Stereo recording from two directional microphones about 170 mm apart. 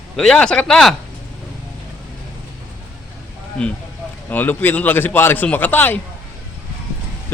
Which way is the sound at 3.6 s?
5° left (ahead or behind).